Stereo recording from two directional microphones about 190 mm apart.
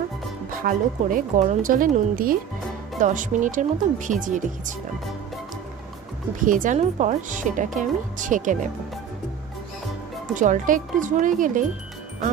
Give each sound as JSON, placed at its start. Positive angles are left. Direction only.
{"t": 0.7, "sound": "speech", "side_deg": -45}
{"t": 6.4, "sound": "speech", "side_deg": -45}
{"t": 10.3, "sound": "speech", "side_deg": -40}